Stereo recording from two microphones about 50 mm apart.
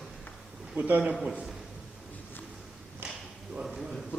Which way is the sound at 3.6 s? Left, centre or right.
Centre.